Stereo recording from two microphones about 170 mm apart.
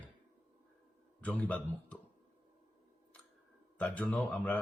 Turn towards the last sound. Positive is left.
turn(degrees=5)  # may be behind; listen again after turning